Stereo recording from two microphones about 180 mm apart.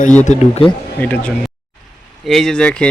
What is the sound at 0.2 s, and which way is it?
Speech, 40° left (ahead or behind).